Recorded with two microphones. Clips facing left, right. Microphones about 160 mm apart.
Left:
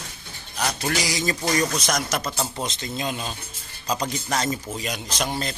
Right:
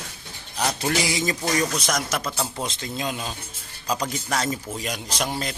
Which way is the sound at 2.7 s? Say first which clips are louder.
Even; 10° right (ahead or behind).